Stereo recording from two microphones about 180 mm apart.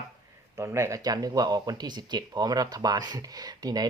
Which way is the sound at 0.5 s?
15° right (ahead or behind).